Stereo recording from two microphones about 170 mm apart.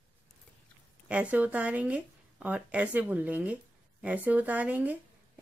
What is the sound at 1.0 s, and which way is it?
A woman's voice, 10° right (ahead or behind).